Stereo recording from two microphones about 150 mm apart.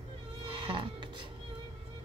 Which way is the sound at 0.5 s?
30° right (ahead or behind).